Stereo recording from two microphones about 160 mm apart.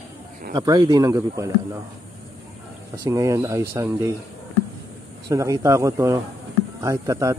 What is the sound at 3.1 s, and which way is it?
Speech, 20° right (ahead or behind).